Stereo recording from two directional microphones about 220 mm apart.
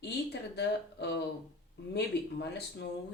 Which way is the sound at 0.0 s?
50° left (ahead or behind).